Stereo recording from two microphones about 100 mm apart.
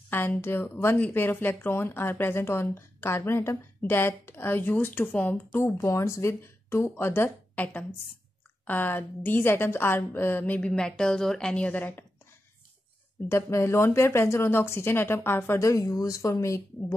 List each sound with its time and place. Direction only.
0.4 s speech: 25° left (ahead or behind)
5.6 s speech: 25° left (ahead or behind)
10.7 s speech: 5° left (ahead or behind)
13.3 s speech: 25° left (ahead or behind)